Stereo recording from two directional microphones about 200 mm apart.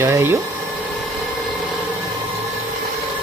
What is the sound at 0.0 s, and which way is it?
Speech, 10° right (ahead or behind).